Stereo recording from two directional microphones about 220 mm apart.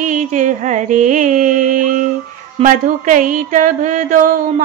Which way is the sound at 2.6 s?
35° right (ahead or behind).